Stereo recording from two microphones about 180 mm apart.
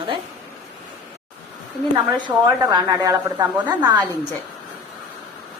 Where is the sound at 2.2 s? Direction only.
25° right (ahead or behind).